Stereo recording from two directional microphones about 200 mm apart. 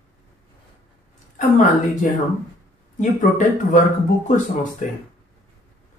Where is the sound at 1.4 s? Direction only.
40° left (ahead or behind).